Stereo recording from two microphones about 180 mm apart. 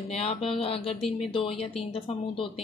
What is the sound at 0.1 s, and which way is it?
Mantra, 35° left (ahead or behind).